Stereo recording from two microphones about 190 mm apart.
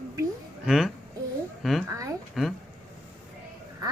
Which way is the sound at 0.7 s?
Centre (ahead or behind).